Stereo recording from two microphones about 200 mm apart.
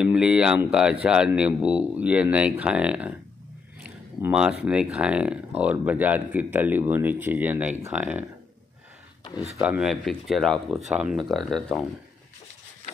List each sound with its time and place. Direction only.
0.0 s speech: 5° right (ahead or behind)
9.2 s a sound: 20° left (ahead or behind)
9.6 s speech: 5° right (ahead or behind)